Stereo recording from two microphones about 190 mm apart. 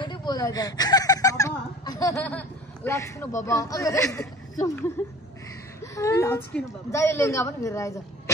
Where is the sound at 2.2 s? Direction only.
10° left (ahead or behind).